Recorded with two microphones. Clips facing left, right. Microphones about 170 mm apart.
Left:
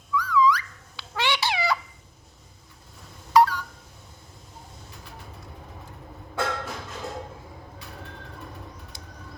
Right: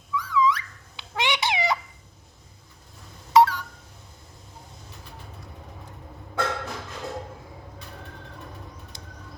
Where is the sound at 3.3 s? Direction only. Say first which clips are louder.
Right 1 dB; 25° right (ahead or behind).